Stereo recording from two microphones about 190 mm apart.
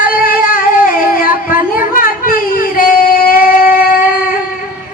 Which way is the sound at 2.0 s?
45° left (ahead or behind).